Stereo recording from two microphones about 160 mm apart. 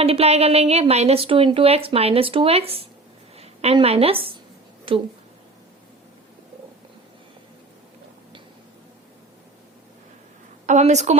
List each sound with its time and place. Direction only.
0.0 s a woman's voice: 40° right (ahead or behind)
10.7 s a woman's voice: 45° right (ahead or behind)